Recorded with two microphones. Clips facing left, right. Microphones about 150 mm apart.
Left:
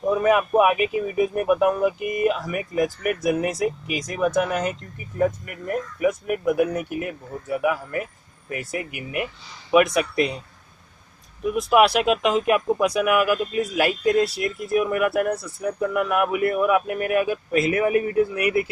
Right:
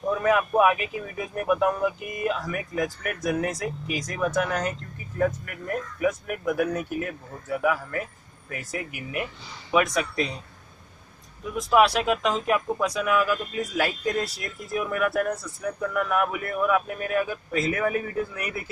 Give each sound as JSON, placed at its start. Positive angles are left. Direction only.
{"t": 0.0, "sound": "a man's voice", "side_deg": 15}
{"t": 11.5, "sound": "a man's voice", "side_deg": 10}
{"t": 14.0, "sound": "speech", "side_deg": 65}
{"t": 14.4, "sound": "a man's voice", "side_deg": 10}
{"t": 18.4, "sound": "speech", "side_deg": 70}